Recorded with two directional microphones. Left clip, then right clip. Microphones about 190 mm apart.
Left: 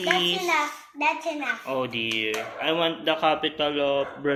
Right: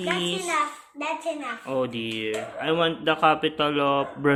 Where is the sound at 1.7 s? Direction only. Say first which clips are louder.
Right 3 dB; 35° right (ahead or behind).